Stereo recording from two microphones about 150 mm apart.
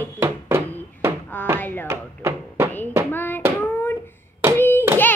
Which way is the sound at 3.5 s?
15° left (ahead or behind).